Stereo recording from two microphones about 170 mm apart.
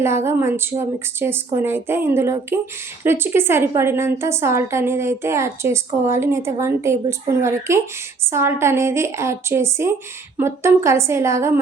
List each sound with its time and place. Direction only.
0.0 s a woman's voice: 15° right (ahead or behind)